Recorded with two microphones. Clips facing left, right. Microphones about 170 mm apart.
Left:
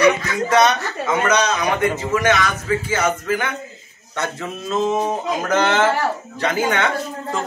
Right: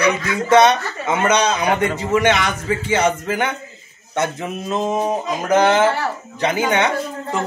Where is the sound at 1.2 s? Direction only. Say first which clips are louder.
Right 3 dB; 30° right (ahead or behind).